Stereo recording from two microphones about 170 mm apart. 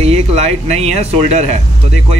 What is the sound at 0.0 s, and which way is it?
Speech, 40° right (ahead or behind).